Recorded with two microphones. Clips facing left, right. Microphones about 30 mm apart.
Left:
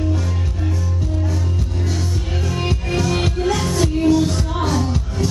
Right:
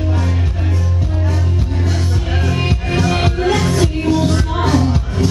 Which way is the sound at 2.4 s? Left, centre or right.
Right.